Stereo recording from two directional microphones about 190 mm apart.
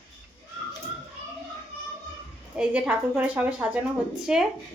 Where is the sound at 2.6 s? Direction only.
5° right (ahead or behind).